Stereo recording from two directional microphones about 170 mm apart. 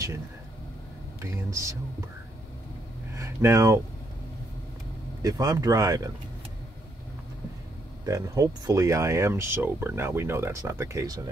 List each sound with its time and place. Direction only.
1.2 s speech: 15° right (ahead or behind)
3.2 s speech: 15° right (ahead or behind)
5.2 s speech: 20° right (ahead or behind)
8.0 s speech: 20° right (ahead or behind)